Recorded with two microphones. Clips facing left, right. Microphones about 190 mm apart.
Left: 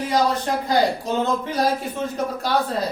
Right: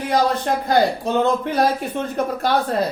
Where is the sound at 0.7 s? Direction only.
60° right (ahead or behind).